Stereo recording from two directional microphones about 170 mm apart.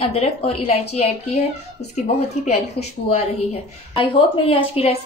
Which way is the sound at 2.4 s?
40° left (ahead or behind).